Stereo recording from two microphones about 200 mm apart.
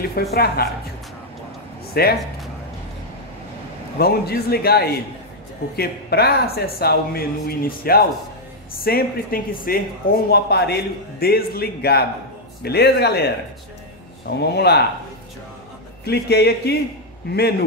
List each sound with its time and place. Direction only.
0.0 s speech: 50° left (ahead or behind)
2.0 s speech: 50° left (ahead or behind)
4.0 s speech: 50° left (ahead or behind)
14.5 s a man's voice: 55° left (ahead or behind)
16.0 s a man's voice: 55° left (ahead or behind)